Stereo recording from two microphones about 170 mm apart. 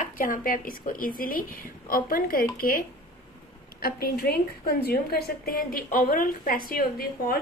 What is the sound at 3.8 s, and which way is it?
A woman's voice, 60° left (ahead or behind).